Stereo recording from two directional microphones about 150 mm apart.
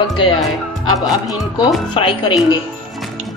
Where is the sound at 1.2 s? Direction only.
30° left (ahead or behind).